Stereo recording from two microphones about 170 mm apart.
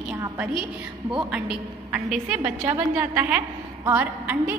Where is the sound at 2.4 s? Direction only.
30° right (ahead or behind).